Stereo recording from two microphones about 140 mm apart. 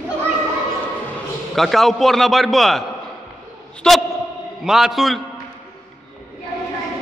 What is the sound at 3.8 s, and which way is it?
A man's voice, 5° left (ahead or behind).